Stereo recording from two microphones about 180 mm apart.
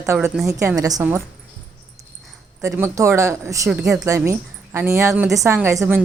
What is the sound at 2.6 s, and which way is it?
A woman's voice, 15° right (ahead or behind).